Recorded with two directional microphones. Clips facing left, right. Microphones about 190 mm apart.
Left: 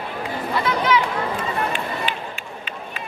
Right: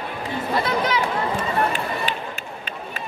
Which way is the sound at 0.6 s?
35° right (ahead or behind).